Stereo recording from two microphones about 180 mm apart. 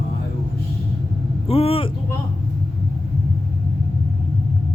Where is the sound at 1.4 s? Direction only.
30° left (ahead or behind).